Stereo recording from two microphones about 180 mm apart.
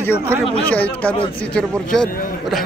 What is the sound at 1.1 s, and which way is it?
Speech, 30° left (ahead or behind).